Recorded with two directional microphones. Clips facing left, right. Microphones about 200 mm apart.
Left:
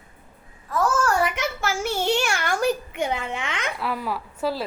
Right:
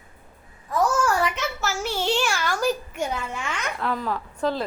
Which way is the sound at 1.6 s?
55° left (ahead or behind).